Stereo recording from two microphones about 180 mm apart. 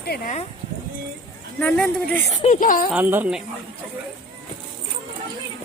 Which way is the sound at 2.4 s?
45° left (ahead or behind).